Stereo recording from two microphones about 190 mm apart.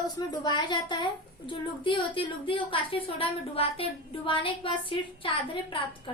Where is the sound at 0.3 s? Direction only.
25° left (ahead or behind).